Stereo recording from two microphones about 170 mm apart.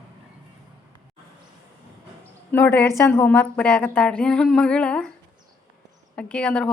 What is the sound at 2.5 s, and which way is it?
A woman's voice, 10° left (ahead or behind).